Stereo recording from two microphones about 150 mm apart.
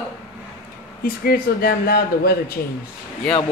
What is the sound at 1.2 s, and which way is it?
Speech, 80° left.